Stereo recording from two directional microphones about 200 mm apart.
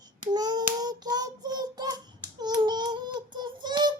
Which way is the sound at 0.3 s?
20° right (ahead or behind).